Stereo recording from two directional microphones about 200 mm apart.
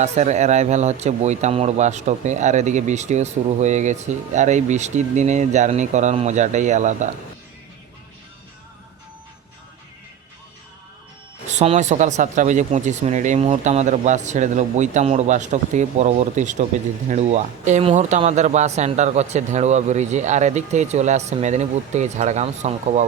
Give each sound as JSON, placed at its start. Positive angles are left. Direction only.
{"t": 0.0, "sound": "speech", "side_deg": -35}
{"t": 11.4, "sound": "speech", "side_deg": -30}